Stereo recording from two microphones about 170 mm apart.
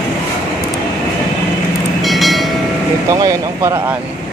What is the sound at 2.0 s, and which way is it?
Train, centre (ahead or behind).